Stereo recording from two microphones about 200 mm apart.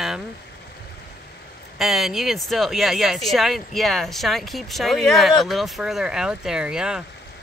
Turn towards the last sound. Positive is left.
turn(degrees=-5)  # may be behind; listen again after turning